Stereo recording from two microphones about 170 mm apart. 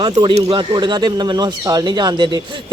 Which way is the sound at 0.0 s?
25° right (ahead or behind).